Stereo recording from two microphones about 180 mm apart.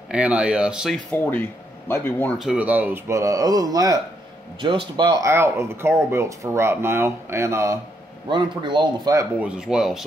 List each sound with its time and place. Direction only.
0.1 s speech: 5° right (ahead or behind)
1.1 s speech: 10° left (ahead or behind)
2.3 s speech: 5° right (ahead or behind); by 9.3 s 20° right (ahead or behind)
9.4 s speech: 5° right (ahead or behind)